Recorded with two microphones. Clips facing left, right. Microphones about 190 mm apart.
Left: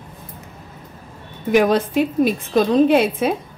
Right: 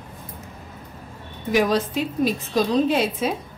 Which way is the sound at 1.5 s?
55° left (ahead or behind).